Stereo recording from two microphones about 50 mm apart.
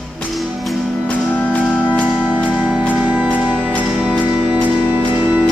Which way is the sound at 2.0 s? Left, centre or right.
Right.